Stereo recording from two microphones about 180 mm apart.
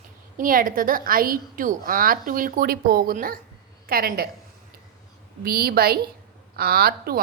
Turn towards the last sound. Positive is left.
turn(degrees=-60)  # may be behind; listen again after turning